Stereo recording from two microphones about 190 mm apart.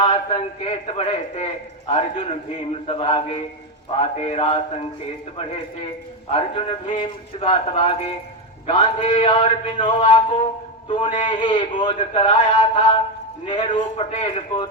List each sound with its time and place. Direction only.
0.0 s a man's voice: 30° left (ahead or behind)
6.3 s a man's voice: 30° left (ahead or behind)